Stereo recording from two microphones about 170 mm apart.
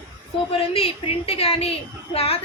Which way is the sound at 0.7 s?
35° left (ahead or behind).